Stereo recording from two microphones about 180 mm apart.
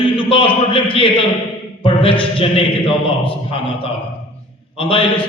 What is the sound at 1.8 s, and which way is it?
A man's voice, 30° left (ahead or behind).